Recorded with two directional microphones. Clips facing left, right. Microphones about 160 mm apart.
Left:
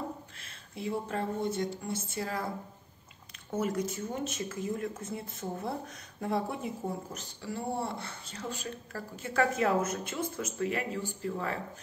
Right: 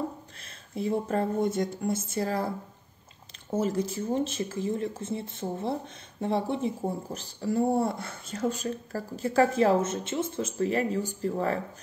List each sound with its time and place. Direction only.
0.4 s speech: 40° right (ahead or behind)